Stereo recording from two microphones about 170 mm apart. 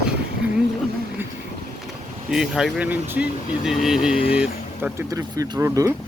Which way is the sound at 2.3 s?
Centre (ahead or behind).